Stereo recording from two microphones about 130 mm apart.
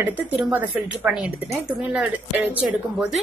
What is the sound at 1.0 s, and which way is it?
A woman's voice, 5° right (ahead or behind).